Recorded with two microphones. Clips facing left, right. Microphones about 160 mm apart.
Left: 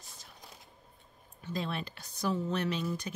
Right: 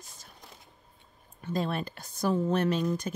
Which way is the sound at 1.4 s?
50° right (ahead or behind).